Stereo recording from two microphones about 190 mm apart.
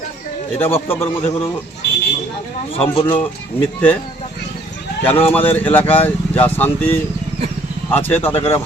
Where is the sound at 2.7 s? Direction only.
30° left (ahead or behind).